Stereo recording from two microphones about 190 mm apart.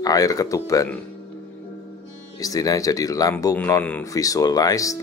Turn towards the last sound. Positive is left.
turn(degrees=20)  # may be behind; listen again after turning